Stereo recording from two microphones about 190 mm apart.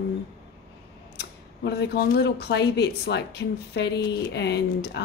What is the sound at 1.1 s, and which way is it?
Speech, 60° left (ahead or behind).